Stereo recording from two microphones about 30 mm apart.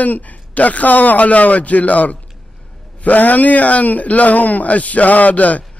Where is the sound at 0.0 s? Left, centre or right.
Left.